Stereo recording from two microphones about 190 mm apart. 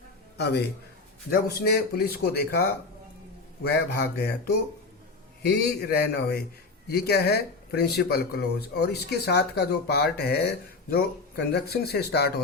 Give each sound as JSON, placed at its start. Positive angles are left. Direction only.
{"t": 0.3, "sound": "a man's voice", "side_deg": 60}